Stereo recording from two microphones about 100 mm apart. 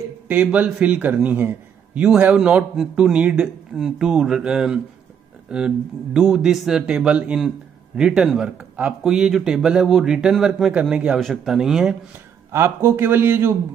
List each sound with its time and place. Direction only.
0.3 s speech: 15° right (ahead or behind)
12.4 s a man's voice: 25° right (ahead or behind)